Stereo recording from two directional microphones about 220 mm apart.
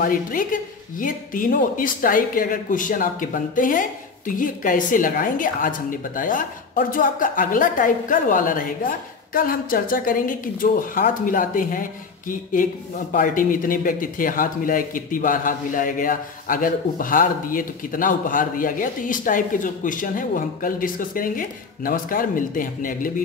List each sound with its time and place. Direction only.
0.0 s speech: 40° left (ahead or behind)